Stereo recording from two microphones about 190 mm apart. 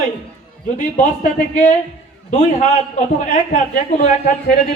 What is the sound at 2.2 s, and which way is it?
A man's voice, 45° left (ahead or behind).